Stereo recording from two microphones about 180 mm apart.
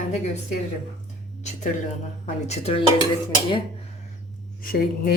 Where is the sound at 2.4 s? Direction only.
35° left (ahead or behind).